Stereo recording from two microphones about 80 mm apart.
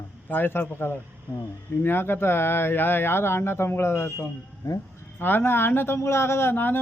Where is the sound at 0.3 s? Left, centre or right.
Left.